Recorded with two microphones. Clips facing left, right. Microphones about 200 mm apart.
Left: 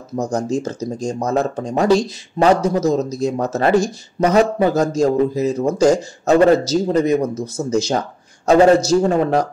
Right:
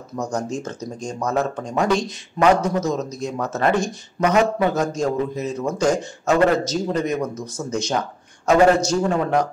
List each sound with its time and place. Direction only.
0.1 s speech: 35° left (ahead or behind)